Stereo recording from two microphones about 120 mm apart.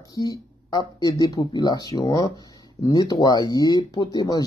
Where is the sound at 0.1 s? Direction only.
30° left (ahead or behind).